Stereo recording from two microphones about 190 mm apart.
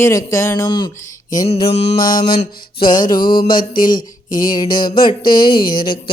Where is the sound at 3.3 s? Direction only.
50° left (ahead or behind).